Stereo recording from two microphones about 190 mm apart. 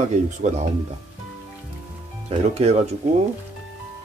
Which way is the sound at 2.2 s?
35° right (ahead or behind).